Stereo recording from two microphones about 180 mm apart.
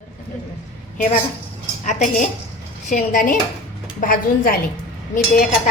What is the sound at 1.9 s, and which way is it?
Speech, 40° left (ahead or behind).